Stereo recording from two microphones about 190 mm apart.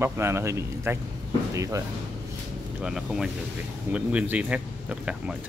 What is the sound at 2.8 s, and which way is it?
Speech, centre (ahead or behind).